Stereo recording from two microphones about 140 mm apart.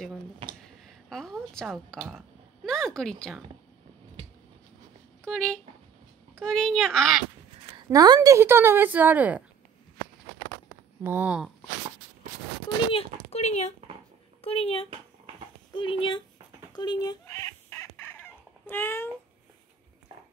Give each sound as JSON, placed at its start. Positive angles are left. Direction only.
{"t": 0.8, "sound": "a woman's voice", "side_deg": 5}
{"t": 5.2, "sound": "speech", "side_deg": 5}
{"t": 7.9, "sound": "a woman's voice", "side_deg": -25}
{"t": 11.0, "sound": "a woman's voice", "side_deg": -15}
{"t": 12.9, "sound": "speech", "side_deg": 50}
{"t": 17.6, "sound": "chicken", "side_deg": 20}